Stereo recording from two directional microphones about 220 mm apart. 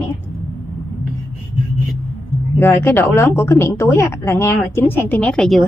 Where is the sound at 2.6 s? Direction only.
10° left (ahead or behind).